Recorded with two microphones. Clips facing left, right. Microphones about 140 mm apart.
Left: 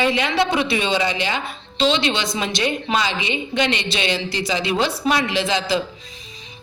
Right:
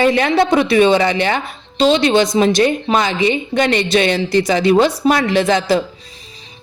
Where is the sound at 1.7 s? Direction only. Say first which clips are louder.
Right 8 dB; 40° right (ahead or behind).